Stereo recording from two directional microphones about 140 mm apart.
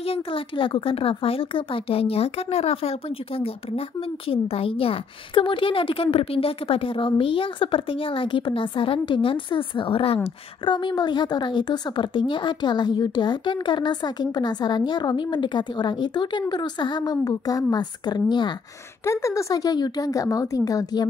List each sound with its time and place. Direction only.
0.0 s a woman's voice: 40° left (ahead or behind)
19.0 s speech: 20° left (ahead or behind)